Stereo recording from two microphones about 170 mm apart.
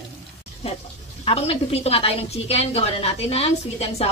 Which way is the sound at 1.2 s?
35° left (ahead or behind).